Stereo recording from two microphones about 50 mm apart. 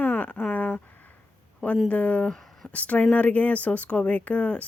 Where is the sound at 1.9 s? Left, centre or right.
Left.